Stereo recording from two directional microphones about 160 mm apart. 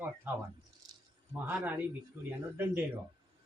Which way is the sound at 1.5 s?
10° right (ahead or behind).